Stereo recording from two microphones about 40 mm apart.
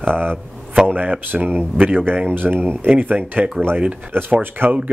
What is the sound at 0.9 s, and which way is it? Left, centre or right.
Speech, right.